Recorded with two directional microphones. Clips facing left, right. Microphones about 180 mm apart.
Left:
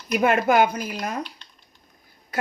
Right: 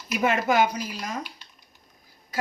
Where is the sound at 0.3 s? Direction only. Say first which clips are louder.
Left 3 dB; 55° left (ahead or behind).